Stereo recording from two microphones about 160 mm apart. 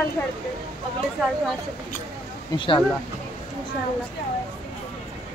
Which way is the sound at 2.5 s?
30° left (ahead or behind).